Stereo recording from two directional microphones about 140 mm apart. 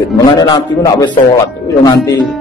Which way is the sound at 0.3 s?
30° left (ahead or behind).